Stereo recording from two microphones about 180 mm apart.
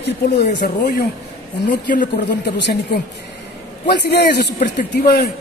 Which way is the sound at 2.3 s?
65° left (ahead or behind).